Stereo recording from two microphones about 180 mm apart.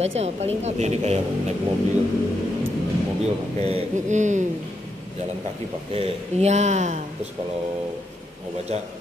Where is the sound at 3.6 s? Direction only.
40° right (ahead or behind).